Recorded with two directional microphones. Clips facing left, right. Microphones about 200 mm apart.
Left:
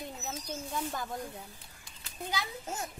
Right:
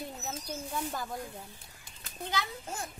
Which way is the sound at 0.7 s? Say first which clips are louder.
Even; centre (ahead or behind).